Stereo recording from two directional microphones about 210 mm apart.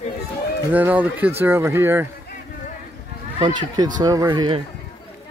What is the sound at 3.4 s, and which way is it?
Speech, 20° right (ahead or behind).